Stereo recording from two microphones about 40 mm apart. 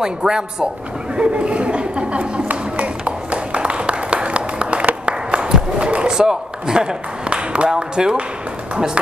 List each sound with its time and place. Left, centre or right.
0.0 s speech: centre
1.1 s a sound: right
6.1 s speech: centre